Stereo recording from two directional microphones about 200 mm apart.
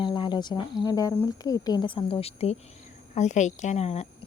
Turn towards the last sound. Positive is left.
turn(degrees=30)  # may be behind; listen again after turning